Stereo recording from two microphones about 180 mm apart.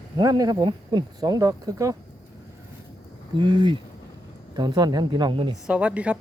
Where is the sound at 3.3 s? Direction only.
25° right (ahead or behind).